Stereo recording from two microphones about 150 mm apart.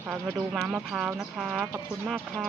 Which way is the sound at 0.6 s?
Centre (ahead or behind).